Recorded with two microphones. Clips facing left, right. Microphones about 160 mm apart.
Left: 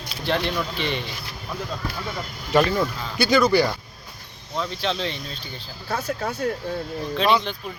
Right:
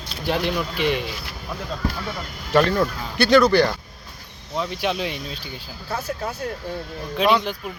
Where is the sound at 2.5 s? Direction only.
10° left (ahead or behind).